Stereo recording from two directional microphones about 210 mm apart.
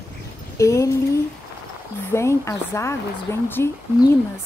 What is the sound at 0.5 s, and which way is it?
Speech, 15° left (ahead or behind).